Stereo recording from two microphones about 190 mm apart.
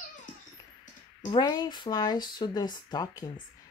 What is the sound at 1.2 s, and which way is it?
Speech, 20° left (ahead or behind).